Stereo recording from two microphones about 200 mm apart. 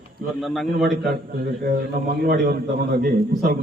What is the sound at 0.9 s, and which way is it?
Speech, 50° right (ahead or behind).